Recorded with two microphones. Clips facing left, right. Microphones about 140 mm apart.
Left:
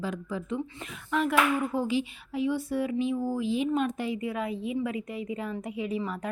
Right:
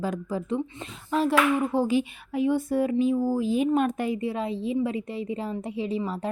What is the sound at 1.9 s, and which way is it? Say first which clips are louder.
Speech: right 4 dB; 50° right (ahead or behind).